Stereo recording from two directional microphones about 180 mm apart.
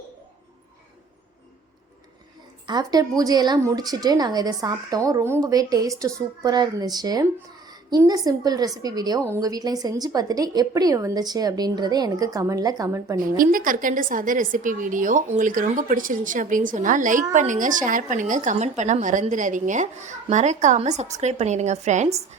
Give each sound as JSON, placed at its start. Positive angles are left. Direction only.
{"t": 2.6, "sound": "a woman's voice", "side_deg": -20}
{"t": 13.4, "sound": "a woman's voice", "side_deg": -50}